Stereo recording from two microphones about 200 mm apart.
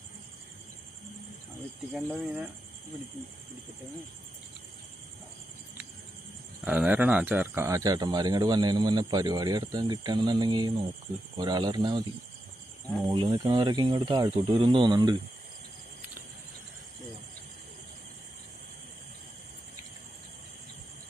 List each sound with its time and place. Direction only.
1.9 s speech: 5° right (ahead or behind)
6.7 s speech: 10° right (ahead or behind)
13.1 s speech: 20° right (ahead or behind)